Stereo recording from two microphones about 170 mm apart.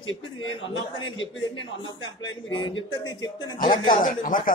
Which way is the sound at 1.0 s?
90° left.